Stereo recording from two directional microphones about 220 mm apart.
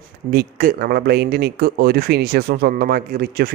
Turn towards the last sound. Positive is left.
turn(degrees=-40)  # may be behind; listen again after turning